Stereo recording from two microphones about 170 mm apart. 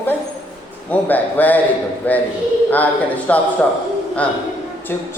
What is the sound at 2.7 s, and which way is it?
Speech, 10° left (ahead or behind).